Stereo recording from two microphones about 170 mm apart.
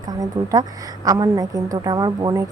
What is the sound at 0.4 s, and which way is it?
A woman's voice, 20° right (ahead or behind).